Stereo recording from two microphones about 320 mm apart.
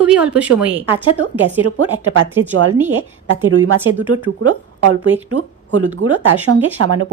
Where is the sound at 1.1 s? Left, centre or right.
Right.